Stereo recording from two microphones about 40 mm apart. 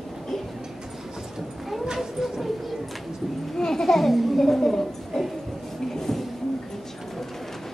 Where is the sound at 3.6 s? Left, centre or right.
Centre.